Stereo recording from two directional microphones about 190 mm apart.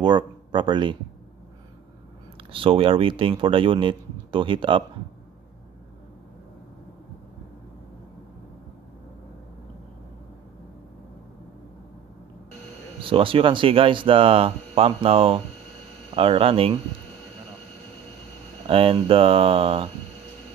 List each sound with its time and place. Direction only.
0.0 s speech: 25° right (ahead or behind)
2.5 s speech: 30° right (ahead or behind)
13.0 s speech: 25° right (ahead or behind)
18.7 s speech: 30° right (ahead or behind)